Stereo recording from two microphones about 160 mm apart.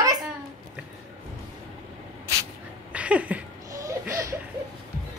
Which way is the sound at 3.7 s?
20° right (ahead or behind).